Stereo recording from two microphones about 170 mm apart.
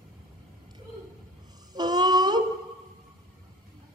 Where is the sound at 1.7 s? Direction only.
25° right (ahead or behind).